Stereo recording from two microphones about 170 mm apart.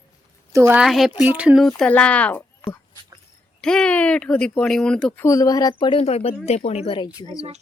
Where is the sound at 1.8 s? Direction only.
5° left (ahead or behind).